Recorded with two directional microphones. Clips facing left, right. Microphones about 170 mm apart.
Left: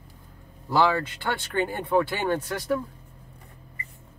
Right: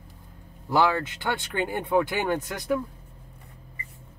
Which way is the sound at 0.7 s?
15° right (ahead or behind).